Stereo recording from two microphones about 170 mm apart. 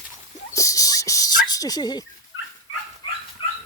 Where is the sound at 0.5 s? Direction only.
20° left (ahead or behind).